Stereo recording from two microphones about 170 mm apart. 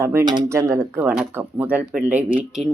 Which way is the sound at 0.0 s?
15° right (ahead or behind).